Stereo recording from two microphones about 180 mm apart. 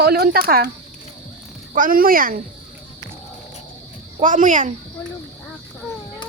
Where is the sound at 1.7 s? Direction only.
50° right (ahead or behind).